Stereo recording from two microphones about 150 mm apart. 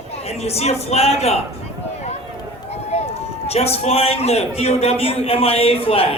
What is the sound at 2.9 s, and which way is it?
A man's voice, 45° left (ahead or behind).